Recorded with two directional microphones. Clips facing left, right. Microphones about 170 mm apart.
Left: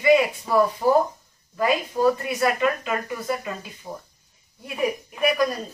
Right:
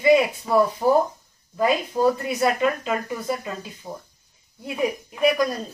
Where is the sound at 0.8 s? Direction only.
5° right (ahead or behind).